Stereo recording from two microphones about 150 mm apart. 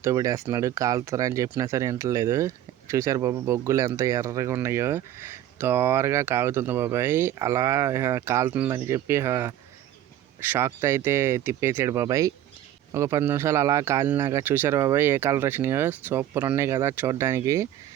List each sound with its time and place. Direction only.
0.0 s speech: 20° right (ahead or behind)